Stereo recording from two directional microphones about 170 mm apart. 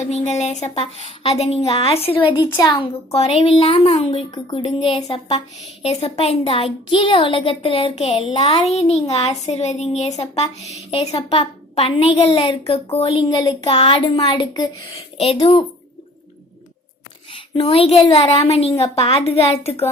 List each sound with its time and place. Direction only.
0.1 s a woman's voice: 40° left (ahead or behind)
5.8 s a woman's voice: 35° left (ahead or behind)
17.3 s a woman's voice: 30° left (ahead or behind)